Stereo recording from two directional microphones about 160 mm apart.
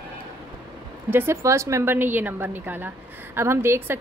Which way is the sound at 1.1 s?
15° right (ahead or behind).